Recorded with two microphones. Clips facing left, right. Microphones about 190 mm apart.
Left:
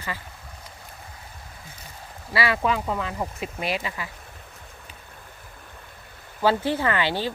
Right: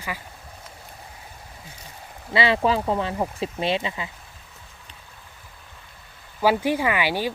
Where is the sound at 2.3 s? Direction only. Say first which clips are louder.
Right 3 dB; 25° right (ahead or behind).